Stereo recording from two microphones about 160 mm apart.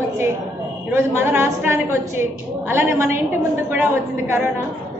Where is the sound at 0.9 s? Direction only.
15° right (ahead or behind).